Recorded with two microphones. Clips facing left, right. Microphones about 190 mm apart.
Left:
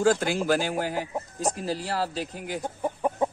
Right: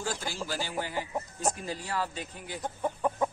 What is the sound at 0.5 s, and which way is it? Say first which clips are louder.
Speech: left 8 dB; 45° left (ahead or behind).